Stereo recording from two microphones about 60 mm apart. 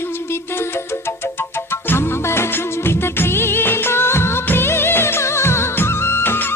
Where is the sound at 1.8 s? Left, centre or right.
Left.